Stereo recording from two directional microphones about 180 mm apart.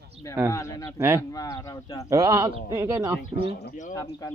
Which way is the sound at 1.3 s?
20° left (ahead or behind).